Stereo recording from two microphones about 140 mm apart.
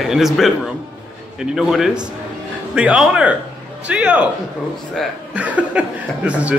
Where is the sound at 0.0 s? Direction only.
Centre (ahead or behind).